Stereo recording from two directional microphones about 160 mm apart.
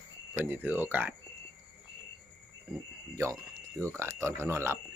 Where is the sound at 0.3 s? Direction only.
10° right (ahead or behind).